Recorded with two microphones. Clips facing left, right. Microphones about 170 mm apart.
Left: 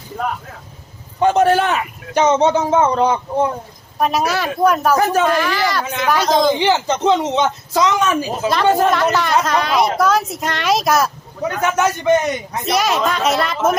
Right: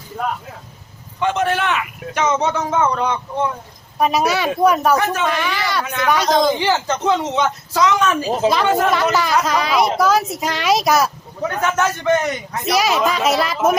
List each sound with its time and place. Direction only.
1.2 s a man's voice: 40° left (ahead or behind)
3.9 s speech: centre (ahead or behind)
5.8 s speech: 25° left (ahead or behind)
6.1 s speech: centre (ahead or behind)
6.5 s speech: 20° left (ahead or behind)
8.4 s speech: centre (ahead or behind)
11.6 s a man's voice: 15° left (ahead or behind)
12.6 s speech: centre (ahead or behind)